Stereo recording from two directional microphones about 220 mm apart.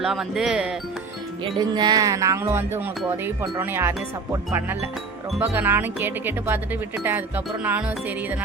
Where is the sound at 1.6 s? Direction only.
20° right (ahead or behind).